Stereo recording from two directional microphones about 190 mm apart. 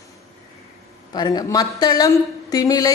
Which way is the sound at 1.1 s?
20° left (ahead or behind).